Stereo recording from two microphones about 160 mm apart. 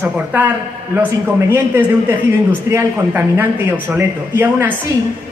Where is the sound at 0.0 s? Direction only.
10° right (ahead or behind).